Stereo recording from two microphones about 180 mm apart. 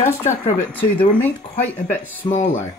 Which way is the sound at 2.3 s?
40° left (ahead or behind).